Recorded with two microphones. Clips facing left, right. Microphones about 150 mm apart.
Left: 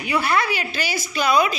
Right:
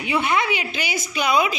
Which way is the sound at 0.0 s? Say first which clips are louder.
Even; 20° right (ahead or behind).